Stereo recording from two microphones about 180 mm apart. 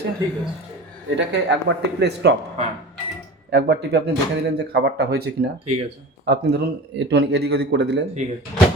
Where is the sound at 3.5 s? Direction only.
65° right (ahead or behind).